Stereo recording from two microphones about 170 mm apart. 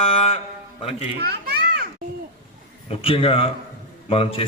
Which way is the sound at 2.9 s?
35° left (ahead or behind).